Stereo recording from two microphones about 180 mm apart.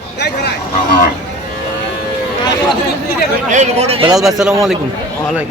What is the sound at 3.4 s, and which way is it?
Speech, 40° right (ahead or behind).